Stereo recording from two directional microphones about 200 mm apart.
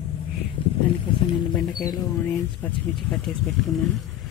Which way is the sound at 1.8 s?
10° left (ahead or behind).